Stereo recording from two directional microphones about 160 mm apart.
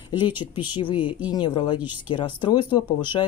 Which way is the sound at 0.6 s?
30° left (ahead or behind).